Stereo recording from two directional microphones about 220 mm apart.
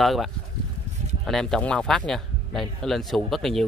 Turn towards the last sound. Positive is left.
turn(degrees=0)  # may be behind; listen again after turning